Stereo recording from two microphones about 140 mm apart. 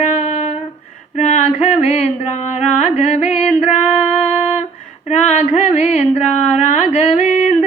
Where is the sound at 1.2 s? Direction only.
55° left (ahead or behind).